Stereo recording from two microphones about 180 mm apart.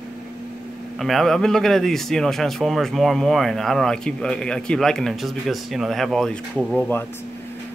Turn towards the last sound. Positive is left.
turn(degrees=10)  # may be behind; listen again after turning